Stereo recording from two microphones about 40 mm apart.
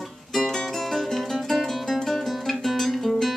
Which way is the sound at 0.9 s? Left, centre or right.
Centre.